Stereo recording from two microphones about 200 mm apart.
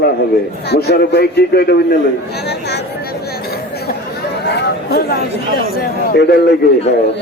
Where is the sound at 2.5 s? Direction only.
55° left (ahead or behind).